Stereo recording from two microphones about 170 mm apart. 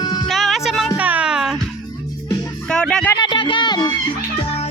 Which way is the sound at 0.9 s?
10° right (ahead or behind).